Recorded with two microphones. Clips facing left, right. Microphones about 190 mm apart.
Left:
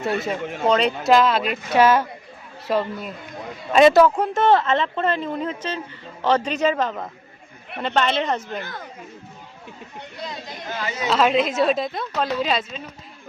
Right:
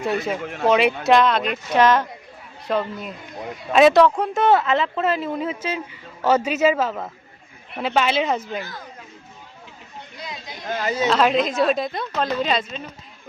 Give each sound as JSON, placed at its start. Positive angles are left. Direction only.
{"t": 0.0, "sound": "speech", "side_deg": 0}
{"t": 10.7, "sound": "a woman's voice", "side_deg": -45}
{"t": 11.1, "sound": "speech", "side_deg": 0}